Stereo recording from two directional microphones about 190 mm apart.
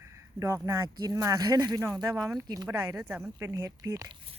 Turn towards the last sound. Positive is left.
turn(degrees=-20)  # may be behind; listen again after turning